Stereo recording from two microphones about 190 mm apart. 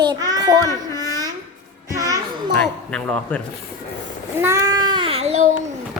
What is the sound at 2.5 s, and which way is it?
Speech, 5° left (ahead or behind).